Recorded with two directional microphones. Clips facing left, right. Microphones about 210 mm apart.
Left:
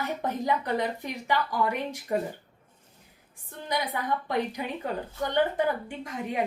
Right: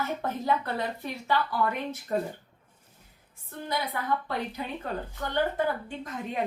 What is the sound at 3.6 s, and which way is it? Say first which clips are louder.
A woman's voice: left 1 dB; 15° left (ahead or behind).